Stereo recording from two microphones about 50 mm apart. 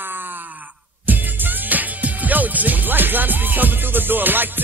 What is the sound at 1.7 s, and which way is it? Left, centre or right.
Music, right.